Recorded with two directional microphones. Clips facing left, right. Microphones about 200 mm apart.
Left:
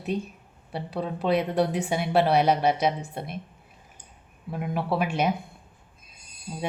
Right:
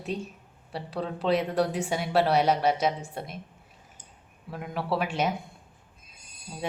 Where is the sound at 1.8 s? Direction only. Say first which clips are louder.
Left 2 dB; 10° left (ahead or behind).